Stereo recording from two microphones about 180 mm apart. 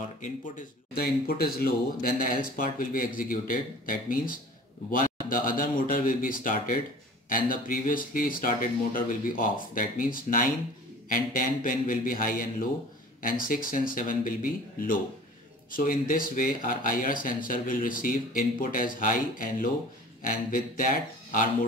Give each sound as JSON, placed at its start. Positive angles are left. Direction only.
{"t": 0.2, "sound": "speech", "side_deg": 50}